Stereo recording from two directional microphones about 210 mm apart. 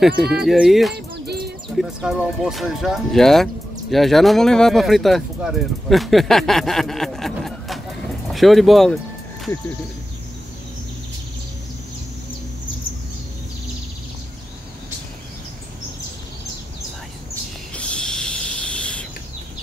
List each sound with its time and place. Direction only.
0.0 s speech: centre (ahead or behind)
0.9 s bird: 50° right (ahead or behind)
1.8 s speech: centre (ahead or behind)
17.7 s owl: 5° left (ahead or behind)